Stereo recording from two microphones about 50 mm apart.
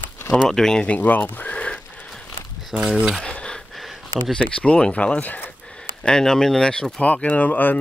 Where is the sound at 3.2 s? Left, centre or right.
Centre.